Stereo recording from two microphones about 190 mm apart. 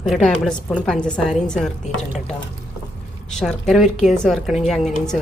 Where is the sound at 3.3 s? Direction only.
5° left (ahead or behind).